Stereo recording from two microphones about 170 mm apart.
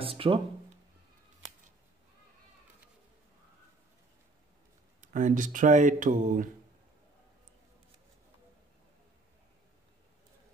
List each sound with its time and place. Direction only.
0.0 s speech: 30° right (ahead or behind)
5.0 s speech: 45° right (ahead or behind)